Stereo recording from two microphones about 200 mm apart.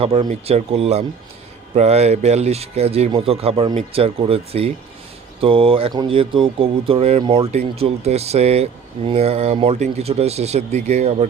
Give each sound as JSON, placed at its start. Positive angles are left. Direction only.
{"t": 0.0, "sound": "speech", "side_deg": -30}